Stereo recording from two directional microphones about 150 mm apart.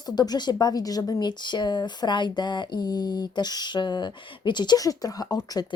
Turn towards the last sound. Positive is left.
turn(degrees=25)  # may be behind; listen again after turning